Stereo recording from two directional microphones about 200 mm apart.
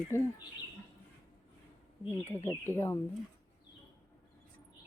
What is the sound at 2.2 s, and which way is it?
Speech, 10° left (ahead or behind).